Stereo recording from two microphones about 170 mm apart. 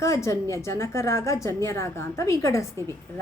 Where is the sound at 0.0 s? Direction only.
15° left (ahead or behind).